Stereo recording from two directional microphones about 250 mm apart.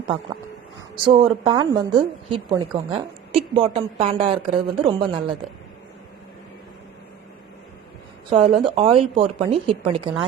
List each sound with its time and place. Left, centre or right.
1.0 s a woman's voice: right
8.3 s a woman's voice: right